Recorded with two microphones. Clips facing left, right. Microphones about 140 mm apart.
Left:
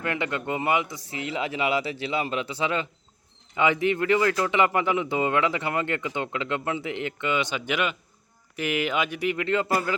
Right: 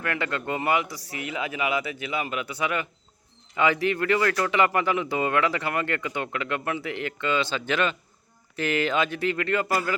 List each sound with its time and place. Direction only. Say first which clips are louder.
0.0 s a man's voice: left 1 dB; 20° left (ahead or behind)